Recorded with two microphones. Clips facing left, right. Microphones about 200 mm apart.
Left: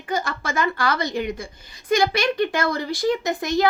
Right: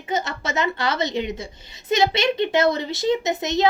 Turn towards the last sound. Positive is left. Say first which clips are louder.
# even
turn(degrees=-20)  # may be behind; listen again after turning